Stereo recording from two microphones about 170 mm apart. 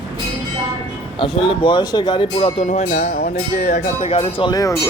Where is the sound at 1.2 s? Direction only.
30° left (ahead or behind).